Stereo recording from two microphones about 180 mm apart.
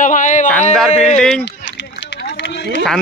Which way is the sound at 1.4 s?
85° left.